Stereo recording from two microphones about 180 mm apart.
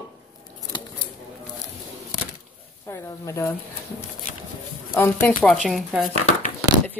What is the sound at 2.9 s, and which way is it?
Speech, 15° left (ahead or behind).